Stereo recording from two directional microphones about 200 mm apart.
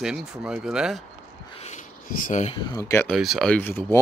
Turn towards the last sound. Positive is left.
turn(degrees=10)  # may be behind; listen again after turning